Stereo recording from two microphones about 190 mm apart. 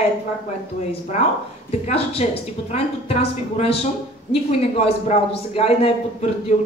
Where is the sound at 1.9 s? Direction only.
30° left (ahead or behind).